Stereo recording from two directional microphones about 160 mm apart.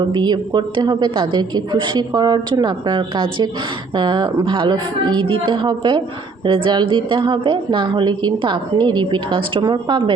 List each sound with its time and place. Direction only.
0.1 s a woman's voice: 25° right (ahead or behind)